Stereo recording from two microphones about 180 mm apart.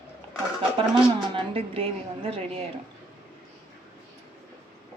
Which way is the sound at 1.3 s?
30° right (ahead or behind).